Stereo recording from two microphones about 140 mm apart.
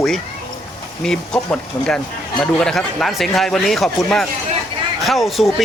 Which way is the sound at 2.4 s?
5° left (ahead or behind).